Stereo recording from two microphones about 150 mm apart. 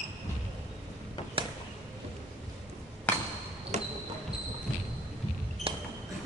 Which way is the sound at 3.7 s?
50° right (ahead or behind).